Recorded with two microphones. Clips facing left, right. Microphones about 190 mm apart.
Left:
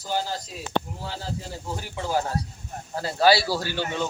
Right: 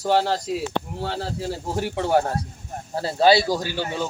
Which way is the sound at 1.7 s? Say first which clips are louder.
Right 6 dB; 65° right (ahead or behind).